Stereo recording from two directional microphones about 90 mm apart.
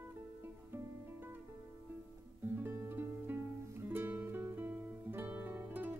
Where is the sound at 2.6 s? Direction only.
25° right (ahead or behind).